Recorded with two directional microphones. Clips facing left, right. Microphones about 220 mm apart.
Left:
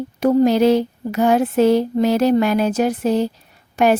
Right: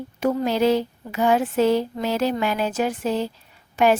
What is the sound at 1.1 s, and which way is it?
A woman's voice, 45° left (ahead or behind).